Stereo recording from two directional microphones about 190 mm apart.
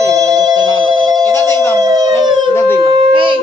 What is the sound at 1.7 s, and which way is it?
Howl, 20° right (ahead or behind).